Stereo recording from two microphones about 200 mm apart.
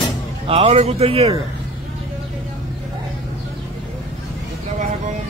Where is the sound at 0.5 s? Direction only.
30° right (ahead or behind).